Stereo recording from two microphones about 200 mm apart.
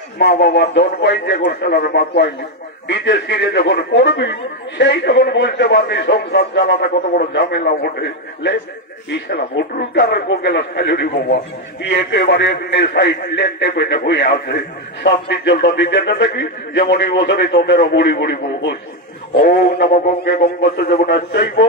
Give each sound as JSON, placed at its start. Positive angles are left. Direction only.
{"t": 0.2, "sound": "a man's voice", "side_deg": 55}